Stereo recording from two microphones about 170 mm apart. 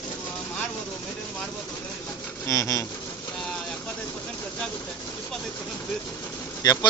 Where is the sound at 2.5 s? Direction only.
20° left (ahead or behind).